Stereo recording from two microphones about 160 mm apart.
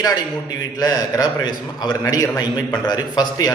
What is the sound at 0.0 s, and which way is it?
A man's voice, 25° left (ahead or behind).